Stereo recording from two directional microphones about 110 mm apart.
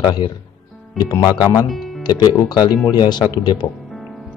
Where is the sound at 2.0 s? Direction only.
40° left (ahead or behind).